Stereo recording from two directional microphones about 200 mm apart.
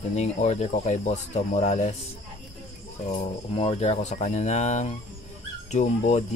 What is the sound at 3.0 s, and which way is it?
Speech, 30° left (ahead or behind).